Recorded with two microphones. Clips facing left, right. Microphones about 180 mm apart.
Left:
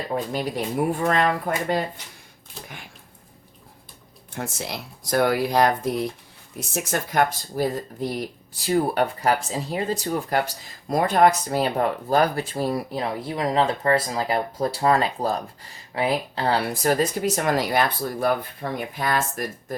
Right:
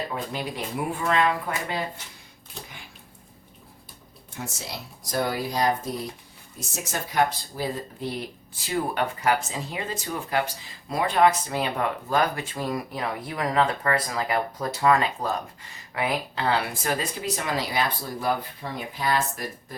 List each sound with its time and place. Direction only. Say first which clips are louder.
0.1 s speech: left 5 dB; 45° left (ahead or behind)
4.4 s speech: left 5 dB; 55° left (ahead or behind)
5.1 s speech: left 6 dB; 65° left (ahead or behind); by 7.7 s 50° left (ahead or behind)
8.6 s speech: left 5 dB; 40° left (ahead or behind)